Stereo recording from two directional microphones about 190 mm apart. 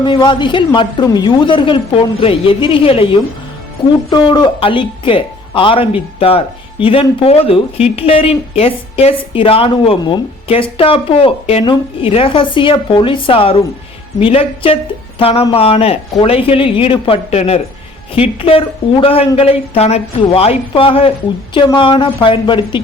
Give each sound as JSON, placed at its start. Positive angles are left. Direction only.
{"t": 0.0, "sound": "speech", "side_deg": 25}